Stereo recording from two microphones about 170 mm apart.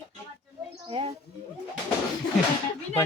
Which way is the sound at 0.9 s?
30° right (ahead or behind).